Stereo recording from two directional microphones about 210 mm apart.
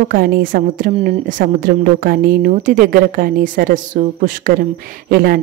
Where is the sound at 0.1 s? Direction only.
45° right (ahead or behind).